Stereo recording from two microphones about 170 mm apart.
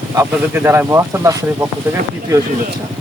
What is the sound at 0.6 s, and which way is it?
Speech, 15° right (ahead or behind).